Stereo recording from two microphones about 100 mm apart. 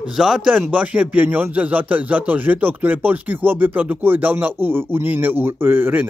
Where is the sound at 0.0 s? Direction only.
5° right (ahead or behind).